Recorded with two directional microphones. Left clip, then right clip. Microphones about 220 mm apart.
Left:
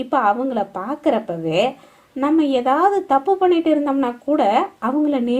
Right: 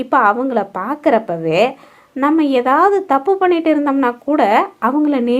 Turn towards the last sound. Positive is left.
turn(degrees=-25)  # may be behind; listen again after turning